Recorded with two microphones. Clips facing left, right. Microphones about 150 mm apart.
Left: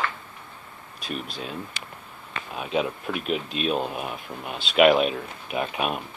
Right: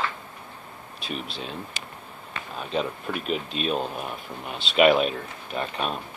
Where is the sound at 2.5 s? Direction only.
5° left (ahead or behind).